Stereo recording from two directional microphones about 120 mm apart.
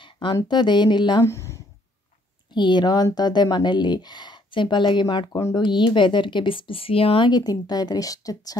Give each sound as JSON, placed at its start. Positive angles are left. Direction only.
{"t": 0.0, "sound": "a sound", "side_deg": 40}
{"t": 0.5, "sound": "speech", "side_deg": 40}
{"t": 1.2, "sound": "speech", "side_deg": 25}
{"t": 2.5, "sound": "speech", "side_deg": 40}
{"t": 7.2, "sound": "speech", "side_deg": 35}